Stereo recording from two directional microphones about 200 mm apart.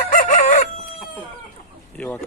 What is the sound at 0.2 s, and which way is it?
Chicken, 40° left (ahead or behind).